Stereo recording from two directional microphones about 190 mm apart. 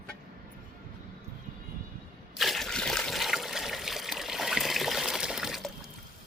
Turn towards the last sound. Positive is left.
turn(degrees=0)  # may be behind; listen again after turning